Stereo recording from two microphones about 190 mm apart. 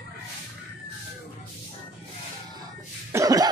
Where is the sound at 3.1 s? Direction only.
20° right (ahead or behind).